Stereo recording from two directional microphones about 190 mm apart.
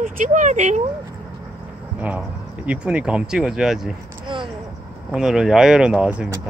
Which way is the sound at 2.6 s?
5° right (ahead or behind).